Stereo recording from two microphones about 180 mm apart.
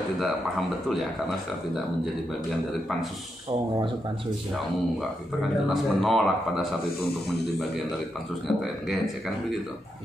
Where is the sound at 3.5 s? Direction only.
25° right (ahead or behind).